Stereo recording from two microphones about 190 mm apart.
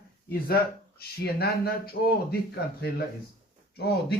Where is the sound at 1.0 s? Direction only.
55° left (ahead or behind).